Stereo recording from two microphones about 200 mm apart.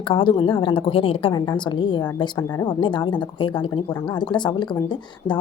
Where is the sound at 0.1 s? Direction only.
25° left (ahead or behind).